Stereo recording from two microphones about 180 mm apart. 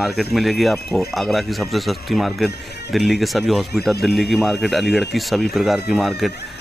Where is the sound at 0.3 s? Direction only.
Centre (ahead or behind).